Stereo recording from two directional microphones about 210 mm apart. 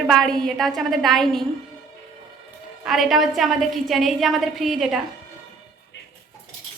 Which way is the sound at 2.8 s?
Centre (ahead or behind).